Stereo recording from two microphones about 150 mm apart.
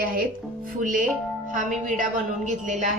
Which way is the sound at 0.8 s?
60° right (ahead or behind).